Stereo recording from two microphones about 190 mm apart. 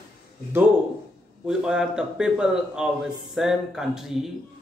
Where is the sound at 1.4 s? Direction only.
5° right (ahead or behind).